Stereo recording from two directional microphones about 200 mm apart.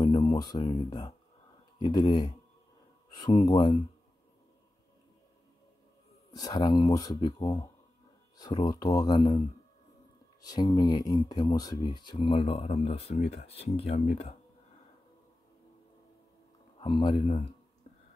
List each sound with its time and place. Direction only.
0.0 s speech: 20° left (ahead or behind)
3.4 s speech: 20° left (ahead or behind)
6.3 s speech: 20° left (ahead or behind)
10.4 s speech: 20° left (ahead or behind)
16.8 s speech: 25° left (ahead or behind)